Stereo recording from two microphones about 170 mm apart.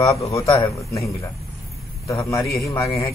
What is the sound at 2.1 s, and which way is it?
A man's voice, 20° left (ahead or behind).